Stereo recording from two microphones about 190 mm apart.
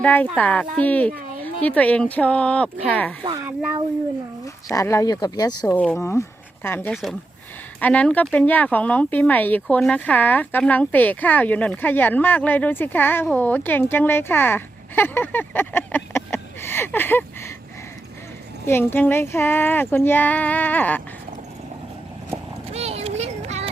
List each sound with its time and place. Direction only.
0.0 s speech: 10° left (ahead or behind)
4.4 s speech: 15° left (ahead or behind)
5.7 s speech: 5° left (ahead or behind)
6.9 s speech: centre (ahead or behind)
18.6 s speech: 10° left (ahead or behind)
22.7 s a sound: 35° right (ahead or behind)